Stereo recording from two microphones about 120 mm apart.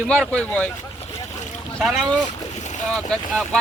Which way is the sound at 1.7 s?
Centre (ahead or behind).